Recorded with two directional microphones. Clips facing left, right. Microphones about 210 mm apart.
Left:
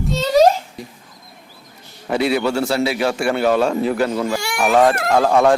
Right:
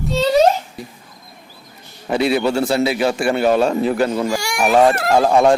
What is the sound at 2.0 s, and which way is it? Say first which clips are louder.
A man's voice: right 1 dB; 20° right (ahead or behind).